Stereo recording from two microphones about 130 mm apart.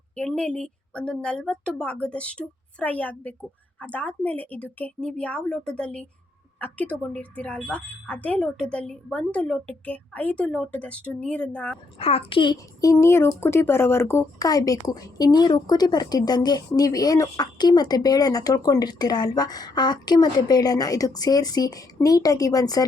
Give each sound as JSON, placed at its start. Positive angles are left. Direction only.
{"t": 0.2, "sound": "speech", "side_deg": 10}
{"t": 11.9, "sound": "a woman's voice", "side_deg": 45}